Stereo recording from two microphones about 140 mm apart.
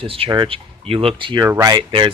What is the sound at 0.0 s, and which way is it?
Speech, 40° right (ahead or behind).